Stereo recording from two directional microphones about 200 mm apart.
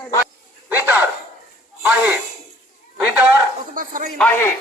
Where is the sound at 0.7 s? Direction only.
10° right (ahead or behind).